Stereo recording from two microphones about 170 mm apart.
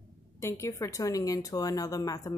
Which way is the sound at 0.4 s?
15° left (ahead or behind).